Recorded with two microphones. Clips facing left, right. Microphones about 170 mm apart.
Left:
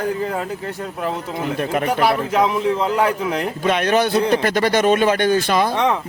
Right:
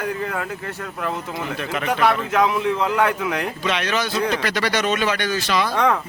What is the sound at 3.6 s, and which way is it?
Speech, 50° left (ahead or behind).